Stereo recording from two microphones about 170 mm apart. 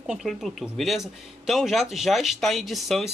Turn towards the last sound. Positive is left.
turn(degrees=0)  # may be behind; listen again after turning